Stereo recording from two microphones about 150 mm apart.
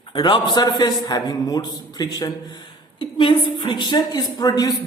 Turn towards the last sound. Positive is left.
turn(degrees=25)  # may be behind; listen again after turning